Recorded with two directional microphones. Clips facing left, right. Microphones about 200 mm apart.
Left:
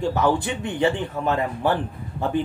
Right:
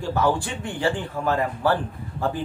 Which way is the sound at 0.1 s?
20° left (ahead or behind).